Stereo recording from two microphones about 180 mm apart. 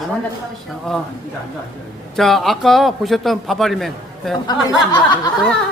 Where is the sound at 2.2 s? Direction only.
Centre (ahead or behind).